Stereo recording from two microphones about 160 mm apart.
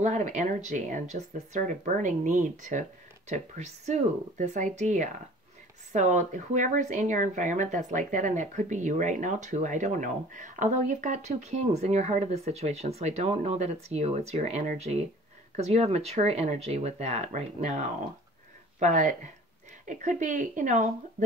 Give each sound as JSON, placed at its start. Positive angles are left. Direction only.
{"t": 0.0, "sound": "speech", "side_deg": -50}